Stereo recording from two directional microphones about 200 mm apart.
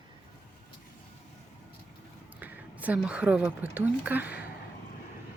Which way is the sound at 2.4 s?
10° right (ahead or behind).